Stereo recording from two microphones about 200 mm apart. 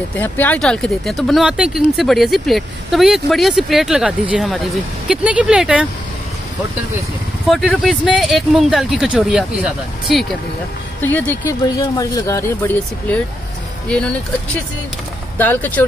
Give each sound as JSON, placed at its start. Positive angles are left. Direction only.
{"t": 0.1, "sound": "speech", "side_deg": 10}
{"t": 7.4, "sound": "speech", "side_deg": 0}
{"t": 11.0, "sound": "speech", "side_deg": 10}
{"t": 15.3, "sound": "speech", "side_deg": 10}